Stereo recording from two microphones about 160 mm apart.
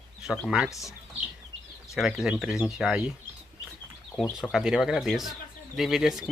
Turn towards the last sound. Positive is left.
turn(degrees=-5)  # may be behind; listen again after turning